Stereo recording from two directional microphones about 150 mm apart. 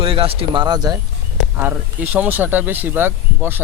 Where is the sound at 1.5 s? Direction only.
10° right (ahead or behind).